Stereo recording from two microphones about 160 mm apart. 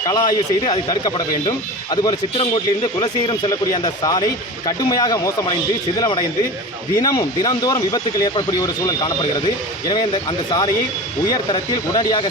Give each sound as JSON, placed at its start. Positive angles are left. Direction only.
{"t": 0.0, "sound": "speech", "side_deg": 25}